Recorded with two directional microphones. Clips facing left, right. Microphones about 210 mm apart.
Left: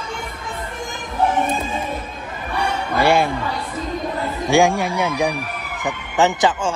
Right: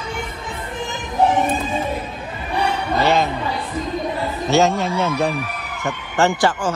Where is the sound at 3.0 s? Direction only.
10° left (ahead or behind).